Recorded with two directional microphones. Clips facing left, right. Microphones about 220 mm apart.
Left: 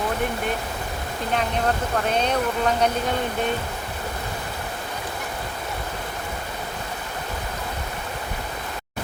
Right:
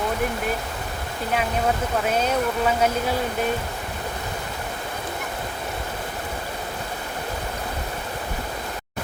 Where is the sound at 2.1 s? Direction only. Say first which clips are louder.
Even; 5° right (ahead or behind).